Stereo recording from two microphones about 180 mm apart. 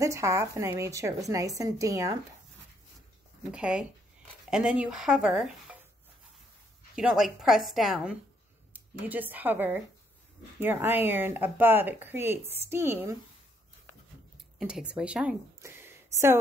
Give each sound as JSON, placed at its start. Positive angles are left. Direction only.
{"t": 0.0, "sound": "speech", "side_deg": -15}
{"t": 3.5, "sound": "speech", "side_deg": -5}
{"t": 7.0, "sound": "speech", "side_deg": -5}
{"t": 14.6, "sound": "speech", "side_deg": -5}